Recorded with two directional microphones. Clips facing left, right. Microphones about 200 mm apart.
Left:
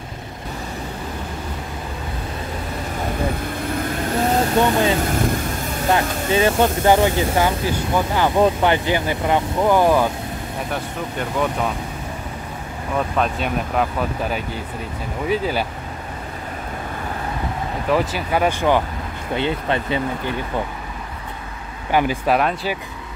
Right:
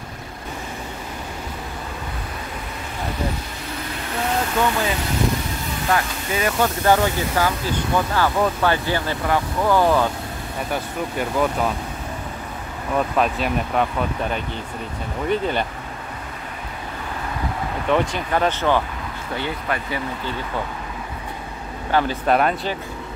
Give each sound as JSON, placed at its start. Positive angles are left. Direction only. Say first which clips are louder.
{"t": 4.2, "sound": "vehicle", "louder": "left 4 dB", "side_deg": 40}
{"t": 4.6, "sound": "speech", "louder": "left 4 dB", "side_deg": 25}
{"t": 10.7, "sound": "speech", "louder": "right 3 dB", "side_deg": 0}
{"t": 13.2, "sound": "speech", "louder": "even", "side_deg": 0}
{"t": 17.8, "sound": "speech", "louder": "even", "side_deg": 5}
{"t": 21.9, "sound": "speech", "louder": "left 1 dB", "side_deg": 10}